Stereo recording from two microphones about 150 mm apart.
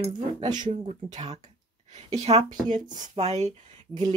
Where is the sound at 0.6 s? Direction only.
50° right (ahead or behind).